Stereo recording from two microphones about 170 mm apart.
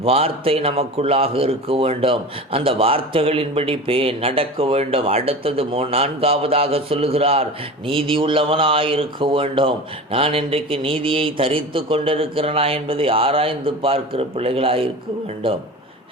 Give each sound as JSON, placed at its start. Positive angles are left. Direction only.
{"t": 0.0, "sound": "a man's voice", "side_deg": -35}